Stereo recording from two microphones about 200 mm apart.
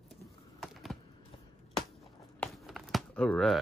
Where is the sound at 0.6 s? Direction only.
Centre (ahead or behind).